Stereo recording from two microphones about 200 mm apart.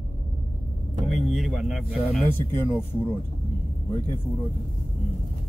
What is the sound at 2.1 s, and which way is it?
Speech, 10° left (ahead or behind).